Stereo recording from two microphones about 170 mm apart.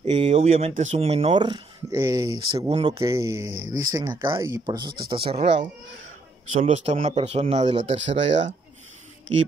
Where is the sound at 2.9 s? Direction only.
20° right (ahead or behind).